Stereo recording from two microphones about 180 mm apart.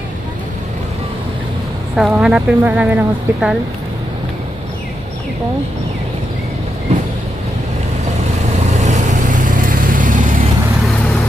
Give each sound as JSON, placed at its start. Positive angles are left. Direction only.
{"t": 2.0, "sound": "speech", "side_deg": -5}
{"t": 8.6, "sound": "vehicle", "side_deg": -40}